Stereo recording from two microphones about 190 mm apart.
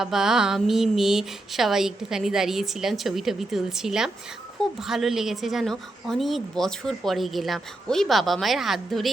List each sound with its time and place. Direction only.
0.0 s a woman's voice: centre (ahead or behind)